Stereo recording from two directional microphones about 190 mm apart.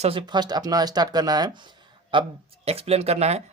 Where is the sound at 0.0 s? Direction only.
30° right (ahead or behind).